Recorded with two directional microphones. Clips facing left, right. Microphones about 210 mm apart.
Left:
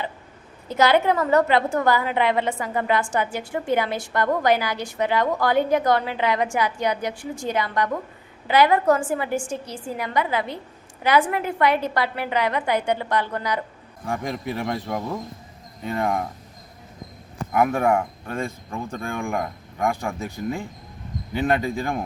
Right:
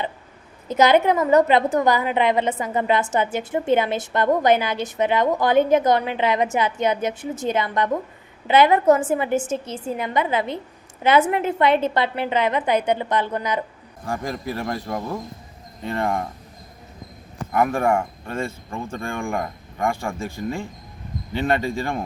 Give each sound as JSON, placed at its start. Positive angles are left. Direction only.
{"t": 0.7, "sound": "a woman's voice", "side_deg": -20}
{"t": 14.1, "sound": "speech", "side_deg": 0}
{"t": 17.5, "sound": "speech", "side_deg": 5}
{"t": 21.3, "sound": "speech", "side_deg": 0}